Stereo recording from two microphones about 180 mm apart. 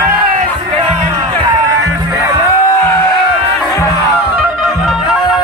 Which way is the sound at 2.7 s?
15° left (ahead or behind).